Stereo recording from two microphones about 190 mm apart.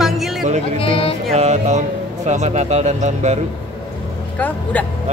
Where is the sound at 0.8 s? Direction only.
30° left (ahead or behind).